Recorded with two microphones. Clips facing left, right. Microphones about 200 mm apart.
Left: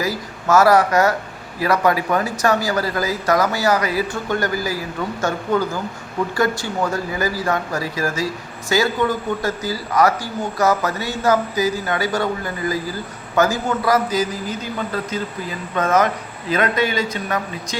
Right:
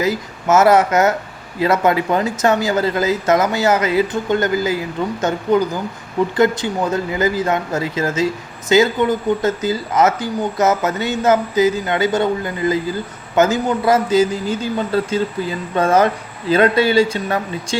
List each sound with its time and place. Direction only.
0.0 s speech: 20° right (ahead or behind)